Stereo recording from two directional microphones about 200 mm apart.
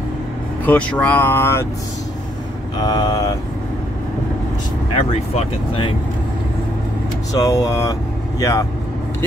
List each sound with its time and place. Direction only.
0.7 s speech: 5° left (ahead or behind)
2.8 s speech: 20° left (ahead or behind)
4.9 s speech: 30° left (ahead or behind)
7.3 s speech: 15° left (ahead or behind)